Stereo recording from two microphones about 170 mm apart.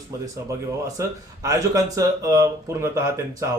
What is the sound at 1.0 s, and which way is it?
Speech, 20° right (ahead or behind).